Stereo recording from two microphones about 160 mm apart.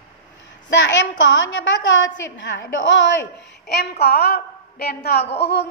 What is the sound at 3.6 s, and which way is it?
A woman's voice, 90° left.